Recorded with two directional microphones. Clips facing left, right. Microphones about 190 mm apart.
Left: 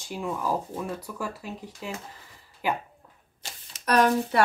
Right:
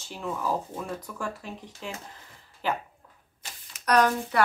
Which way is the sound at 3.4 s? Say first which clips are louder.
Left 2 dB; 25° left (ahead or behind).